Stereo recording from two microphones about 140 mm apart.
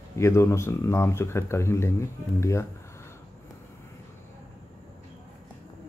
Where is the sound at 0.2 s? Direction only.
20° left (ahead or behind).